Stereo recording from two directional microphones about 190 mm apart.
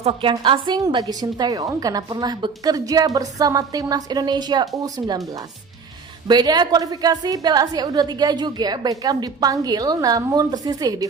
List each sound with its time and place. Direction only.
0.0 s a woman's voice: 30° right (ahead or behind)
6.2 s a woman's voice: 20° right (ahead or behind)